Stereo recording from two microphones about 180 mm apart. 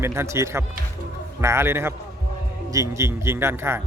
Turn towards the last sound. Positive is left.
turn(degrees=-15)  # may be behind; listen again after turning